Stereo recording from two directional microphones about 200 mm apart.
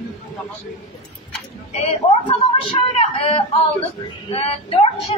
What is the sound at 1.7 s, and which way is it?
A woman's voice, 30° left (ahead or behind).